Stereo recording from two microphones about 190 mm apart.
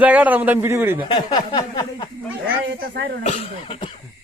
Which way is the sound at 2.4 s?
55° right (ahead or behind).